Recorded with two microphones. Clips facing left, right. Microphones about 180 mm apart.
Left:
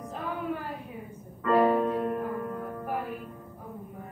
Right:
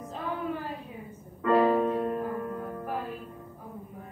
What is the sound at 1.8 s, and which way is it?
Music, 15° right (ahead or behind).